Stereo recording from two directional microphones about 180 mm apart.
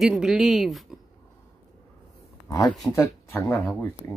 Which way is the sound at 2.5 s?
20° left (ahead or behind).